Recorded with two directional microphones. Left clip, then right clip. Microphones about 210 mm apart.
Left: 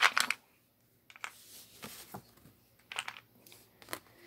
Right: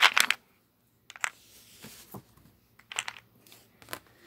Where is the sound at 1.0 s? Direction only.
20° right (ahead or behind).